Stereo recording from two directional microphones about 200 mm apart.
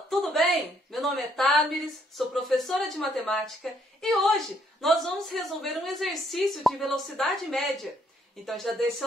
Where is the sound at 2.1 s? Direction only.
Centre (ahead or behind).